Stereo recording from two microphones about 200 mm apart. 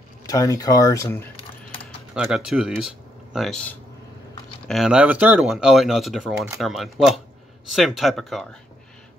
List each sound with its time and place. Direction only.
0.3 s speech: 15° left (ahead or behind)
2.1 s speech: 5° right (ahead or behind)